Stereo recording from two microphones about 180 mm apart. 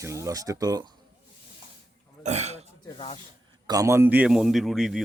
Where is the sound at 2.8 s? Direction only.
30° left (ahead or behind).